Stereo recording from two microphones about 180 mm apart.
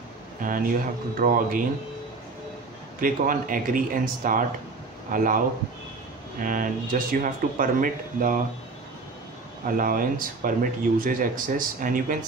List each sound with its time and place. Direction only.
0.4 s speech: 50° right (ahead or behind)
3.0 s speech: 50° right (ahead or behind)
6.4 s speech: 50° right (ahead or behind)
9.7 s speech: 50° right (ahead or behind)